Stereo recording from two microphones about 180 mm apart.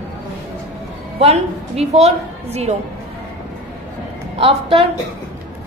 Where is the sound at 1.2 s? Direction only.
35° right (ahead or behind).